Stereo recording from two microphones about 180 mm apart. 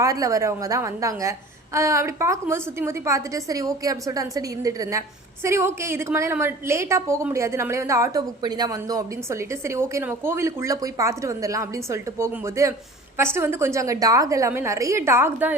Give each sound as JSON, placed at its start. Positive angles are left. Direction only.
{"t": 0.0, "sound": "a woman's voice", "side_deg": -20}